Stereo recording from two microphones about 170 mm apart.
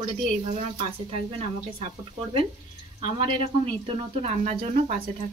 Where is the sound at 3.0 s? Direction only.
30° right (ahead or behind).